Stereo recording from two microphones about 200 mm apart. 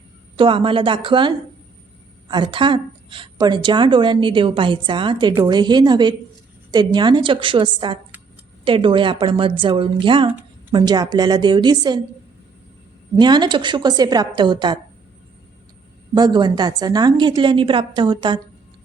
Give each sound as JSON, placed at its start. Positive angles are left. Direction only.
{"t": 0.3, "sound": "a woman's voice", "side_deg": -25}
{"t": 13.1, "sound": "a woman's voice", "side_deg": -20}
{"t": 16.1, "sound": "a woman's voice", "side_deg": -20}